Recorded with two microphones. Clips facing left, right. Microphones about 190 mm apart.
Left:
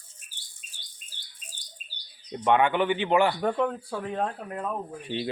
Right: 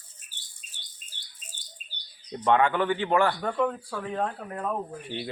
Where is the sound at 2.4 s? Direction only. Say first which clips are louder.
Even; 15° left (ahead or behind).